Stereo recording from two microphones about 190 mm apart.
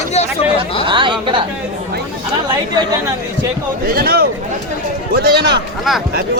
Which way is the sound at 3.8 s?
55° right (ahead or behind).